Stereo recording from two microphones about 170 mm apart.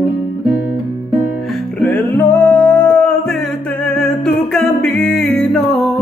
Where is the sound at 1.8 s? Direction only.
10° left (ahead or behind).